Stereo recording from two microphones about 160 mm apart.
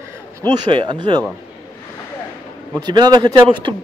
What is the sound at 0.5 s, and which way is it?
Speech, 30° right (ahead or behind).